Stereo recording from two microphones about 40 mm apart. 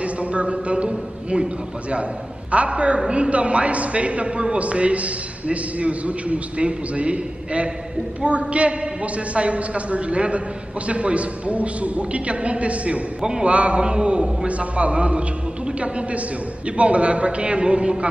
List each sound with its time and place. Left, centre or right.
0.0 s a sound: right
0.8 s a man's voice: right
13.2 s a man's voice: centre
13.5 s a man's voice: right